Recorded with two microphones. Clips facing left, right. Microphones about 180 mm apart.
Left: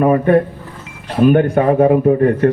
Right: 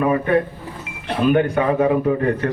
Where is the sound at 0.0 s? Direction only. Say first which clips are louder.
Left 6 dB; 45° left (ahead or behind).